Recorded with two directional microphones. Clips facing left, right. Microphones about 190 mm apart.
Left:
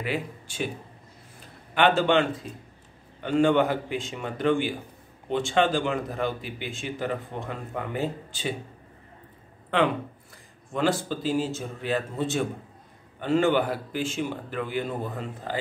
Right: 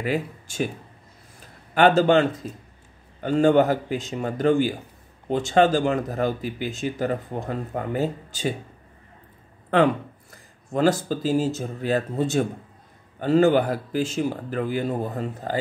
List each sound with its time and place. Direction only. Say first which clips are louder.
0.0 s speech: right 4 dB; 45° right (ahead or behind)
1.8 s speech: right 4 dB; 40° right (ahead or behind)
10.3 s speech: right 5 dB; 40° right (ahead or behind)